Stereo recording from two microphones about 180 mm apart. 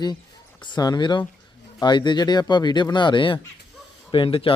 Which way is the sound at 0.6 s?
25° left (ahead or behind).